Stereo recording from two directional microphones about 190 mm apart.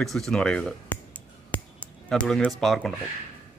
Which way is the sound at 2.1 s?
5° left (ahead or behind).